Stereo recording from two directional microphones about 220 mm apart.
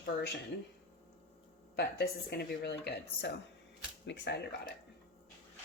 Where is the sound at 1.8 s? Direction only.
50° left (ahead or behind).